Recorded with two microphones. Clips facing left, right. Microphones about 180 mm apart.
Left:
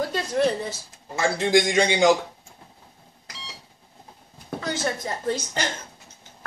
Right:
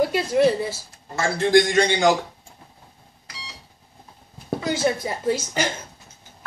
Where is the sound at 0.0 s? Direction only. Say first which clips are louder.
Right 5 dB; 10° right (ahead or behind).